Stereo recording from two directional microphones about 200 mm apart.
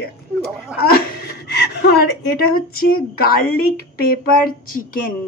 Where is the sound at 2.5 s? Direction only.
50° left (ahead or behind).